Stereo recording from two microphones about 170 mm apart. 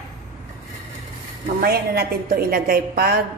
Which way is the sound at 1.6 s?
60° right (ahead or behind).